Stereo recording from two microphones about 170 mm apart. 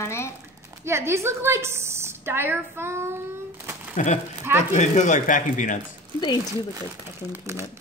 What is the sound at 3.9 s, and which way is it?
Speech, 45° left (ahead or behind).